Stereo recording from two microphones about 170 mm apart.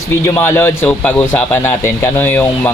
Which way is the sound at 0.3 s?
15° left (ahead or behind).